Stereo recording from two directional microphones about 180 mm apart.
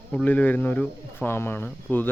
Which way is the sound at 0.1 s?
10° left (ahead or behind).